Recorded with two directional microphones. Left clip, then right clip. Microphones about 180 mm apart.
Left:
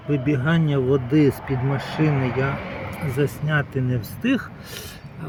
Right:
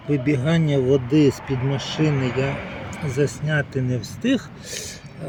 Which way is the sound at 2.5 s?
35° left (ahead or behind).